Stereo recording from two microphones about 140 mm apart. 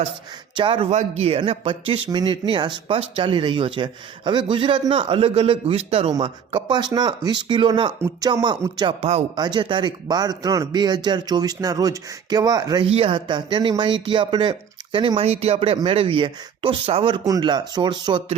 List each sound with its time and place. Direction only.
0.5 s speech: 40° right (ahead or behind)
6.1 s speech: 35° right (ahead or behind)
9.0 s speech: 50° right (ahead or behind)
9.3 s speech: 35° right (ahead or behind)
12.8 s speech: 40° right (ahead or behind)
17.2 s speech: 30° right (ahead or behind)